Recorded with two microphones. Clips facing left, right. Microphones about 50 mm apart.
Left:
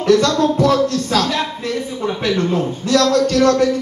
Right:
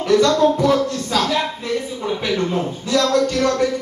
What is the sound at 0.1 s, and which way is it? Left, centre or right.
A man's voice, right.